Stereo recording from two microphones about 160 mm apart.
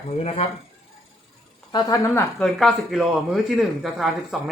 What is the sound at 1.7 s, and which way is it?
Speech, 20° left (ahead or behind).